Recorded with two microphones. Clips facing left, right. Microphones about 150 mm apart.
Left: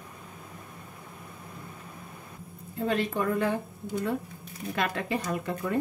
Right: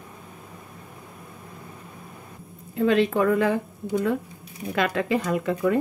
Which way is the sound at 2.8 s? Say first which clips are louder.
Right 8 dB; 90° right.